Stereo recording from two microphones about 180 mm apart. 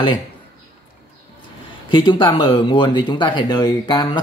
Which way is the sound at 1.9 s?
25° left (ahead or behind).